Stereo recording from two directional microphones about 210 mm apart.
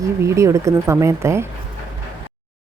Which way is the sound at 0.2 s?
15° right (ahead or behind).